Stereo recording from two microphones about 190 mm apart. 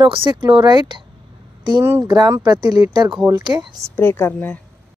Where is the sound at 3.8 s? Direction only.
10° left (ahead or behind).